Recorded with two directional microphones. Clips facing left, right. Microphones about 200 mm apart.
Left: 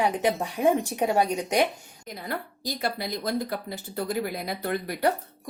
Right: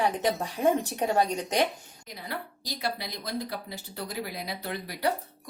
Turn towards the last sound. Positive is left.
turn(degrees=50)  # may be behind; listen again after turning